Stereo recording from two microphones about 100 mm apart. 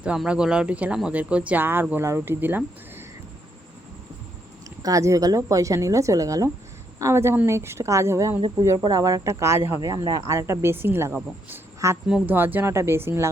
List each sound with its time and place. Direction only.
0.3 s speech: 10° right (ahead or behind)
4.8 s a woman's voice: 35° right (ahead or behind)
9.8 s speech: 40° right (ahead or behind); by 11.9 s 25° right (ahead or behind)
12.0 s speech: 10° right (ahead or behind)
12.3 s speech: 20° right (ahead or behind)